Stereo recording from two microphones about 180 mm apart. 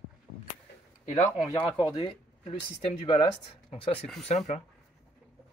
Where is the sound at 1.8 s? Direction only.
25° left (ahead or behind).